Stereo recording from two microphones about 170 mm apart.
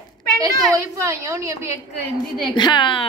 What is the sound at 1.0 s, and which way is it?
Speech, 20° right (ahead or behind).